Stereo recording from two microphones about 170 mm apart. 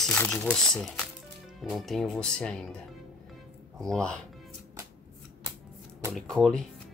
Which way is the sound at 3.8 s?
5° left (ahead or behind).